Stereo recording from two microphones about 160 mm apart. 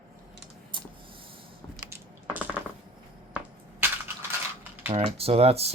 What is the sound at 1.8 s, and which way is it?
Biting, 10° right (ahead or behind).